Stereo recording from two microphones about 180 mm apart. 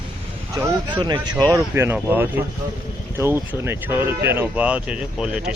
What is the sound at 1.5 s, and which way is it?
Speech, 10° right (ahead or behind).